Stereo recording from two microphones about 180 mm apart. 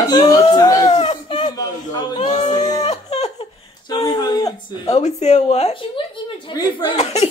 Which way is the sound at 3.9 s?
25° left (ahead or behind).